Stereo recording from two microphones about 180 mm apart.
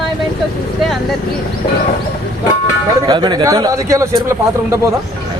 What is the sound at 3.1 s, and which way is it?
A man's voice, 25° right (ahead or behind).